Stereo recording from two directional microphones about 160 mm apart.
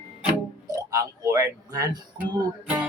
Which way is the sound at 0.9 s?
20° right (ahead or behind).